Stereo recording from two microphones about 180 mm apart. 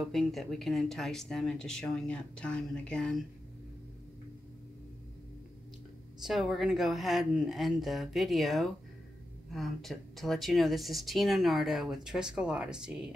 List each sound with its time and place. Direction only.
0.0 s speech: centre (ahead or behind)
6.2 s speech: centre (ahead or behind)